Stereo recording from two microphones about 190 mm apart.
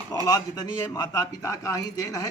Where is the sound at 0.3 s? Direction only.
20° left (ahead or behind).